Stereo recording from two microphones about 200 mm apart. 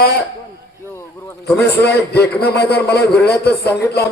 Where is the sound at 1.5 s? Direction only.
55° left (ahead or behind).